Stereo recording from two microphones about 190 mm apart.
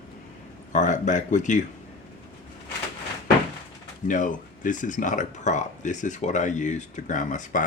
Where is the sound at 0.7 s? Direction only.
40° left (ahead or behind).